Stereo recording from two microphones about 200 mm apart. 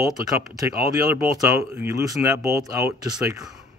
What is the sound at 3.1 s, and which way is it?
Speech, 5° right (ahead or behind).